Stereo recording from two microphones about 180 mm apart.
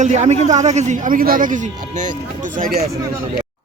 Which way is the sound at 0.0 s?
40° right (ahead or behind).